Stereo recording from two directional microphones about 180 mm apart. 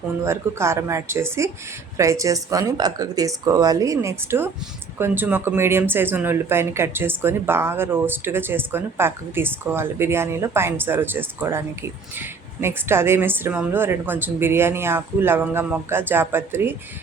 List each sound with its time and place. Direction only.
0.3 s a woman's voice: 15° right (ahead or behind)